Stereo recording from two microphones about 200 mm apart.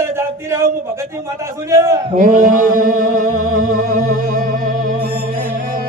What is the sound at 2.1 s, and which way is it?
Music, 45° right (ahead or behind).